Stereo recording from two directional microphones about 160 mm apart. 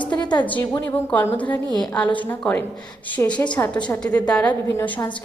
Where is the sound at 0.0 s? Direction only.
30° left (ahead or behind).